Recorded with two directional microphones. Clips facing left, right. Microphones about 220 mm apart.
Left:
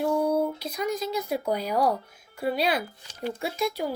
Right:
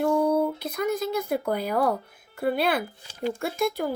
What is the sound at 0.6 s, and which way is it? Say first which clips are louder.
A child's voice: right 2 dB; 55° right (ahead or behind).